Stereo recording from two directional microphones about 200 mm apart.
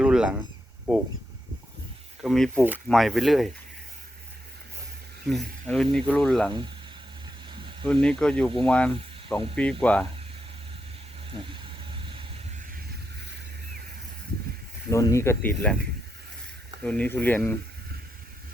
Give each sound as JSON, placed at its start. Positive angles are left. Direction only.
{"t": 0.0, "sound": "a sound", "side_deg": -5}
{"t": 0.9, "sound": "speech", "side_deg": -5}
{"t": 2.2, "sound": "speech", "side_deg": 0}
{"t": 5.3, "sound": "speech", "side_deg": 0}
{"t": 7.5, "sound": "a sound", "side_deg": -25}
{"t": 8.0, "sound": "speech", "side_deg": 5}
{"t": 11.9, "sound": "vehicle", "side_deg": -25}
{"t": 14.8, "sound": "speech", "side_deg": 15}
{"t": 16.8, "sound": "speech", "side_deg": 5}